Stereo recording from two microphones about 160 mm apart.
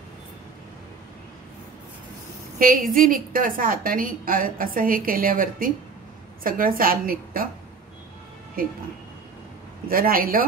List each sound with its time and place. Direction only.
2.6 s a woman's voice: 60° right (ahead or behind)
8.6 s a woman's voice: 65° right (ahead or behind)
9.8 s a man's voice: 65° right (ahead or behind)